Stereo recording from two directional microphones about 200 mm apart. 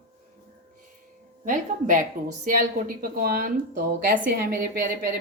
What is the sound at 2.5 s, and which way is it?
A woman's voice, 45° right (ahead or behind).